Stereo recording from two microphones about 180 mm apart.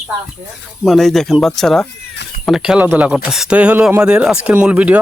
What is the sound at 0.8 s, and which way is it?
Speech, centre (ahead or behind).